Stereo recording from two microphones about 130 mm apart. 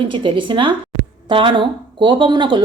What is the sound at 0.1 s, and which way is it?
Speech, 40° right (ahead or behind).